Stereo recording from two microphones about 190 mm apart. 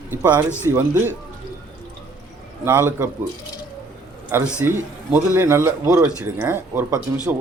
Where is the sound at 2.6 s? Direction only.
10° right (ahead or behind).